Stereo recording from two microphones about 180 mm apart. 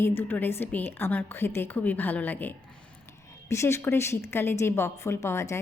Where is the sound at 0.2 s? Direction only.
10° left (ahead or behind).